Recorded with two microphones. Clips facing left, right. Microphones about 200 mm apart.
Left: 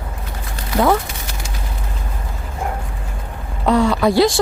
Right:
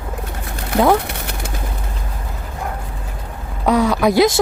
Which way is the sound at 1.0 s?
65° right (ahead or behind).